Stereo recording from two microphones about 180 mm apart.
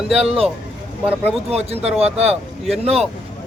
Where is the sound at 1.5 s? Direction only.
35° right (ahead or behind).